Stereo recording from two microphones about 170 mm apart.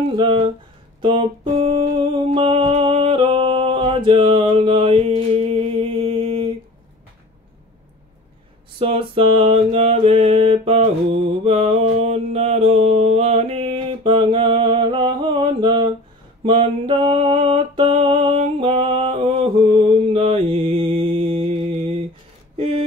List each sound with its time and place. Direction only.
0.2 s mantra: 35° right (ahead or behind)
1.0 s music: 30° right (ahead or behind)
8.7 s mantra: 35° right (ahead or behind)
16.4 s music: 30° right (ahead or behind)